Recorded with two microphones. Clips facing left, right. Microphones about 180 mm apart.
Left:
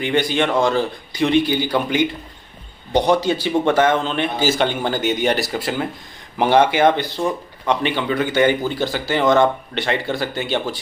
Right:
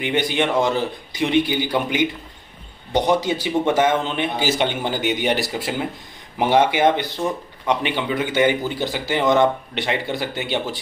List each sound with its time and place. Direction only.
0.0 s speech: 15° right (ahead or behind)
3.1 s speech: 15° right (ahead or behind)